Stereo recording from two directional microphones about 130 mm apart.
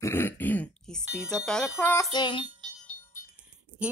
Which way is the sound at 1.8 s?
15° left (ahead or behind).